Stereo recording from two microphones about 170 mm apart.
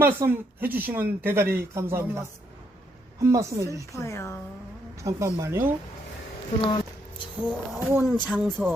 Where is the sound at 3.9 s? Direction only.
15° left (ahead or behind).